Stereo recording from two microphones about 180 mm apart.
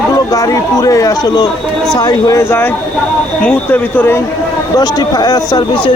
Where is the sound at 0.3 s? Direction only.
20° left (ahead or behind).